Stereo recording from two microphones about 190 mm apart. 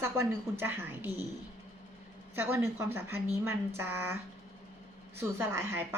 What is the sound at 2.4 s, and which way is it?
A woman's voice, 15° right (ahead or behind).